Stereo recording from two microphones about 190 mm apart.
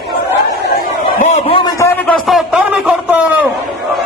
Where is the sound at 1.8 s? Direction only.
10° left (ahead or behind); by 3.5 s 5° right (ahead or behind).